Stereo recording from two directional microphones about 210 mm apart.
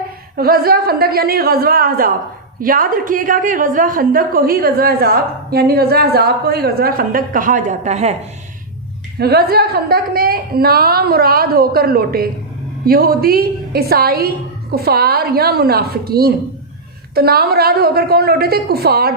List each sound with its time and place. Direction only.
0.3 s a woman's voice: 45° right (ahead or behind)
9.1 s a woman's voice: 50° right (ahead or behind)